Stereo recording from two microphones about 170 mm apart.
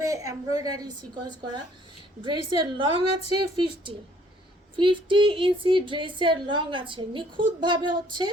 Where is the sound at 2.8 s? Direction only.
30° right (ahead or behind).